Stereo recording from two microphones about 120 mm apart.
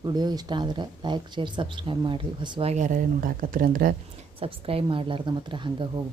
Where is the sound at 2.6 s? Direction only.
80° right.